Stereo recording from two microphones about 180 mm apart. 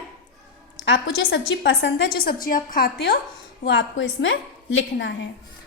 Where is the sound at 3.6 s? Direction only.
70° left (ahead or behind); by 5.1 s 90° left.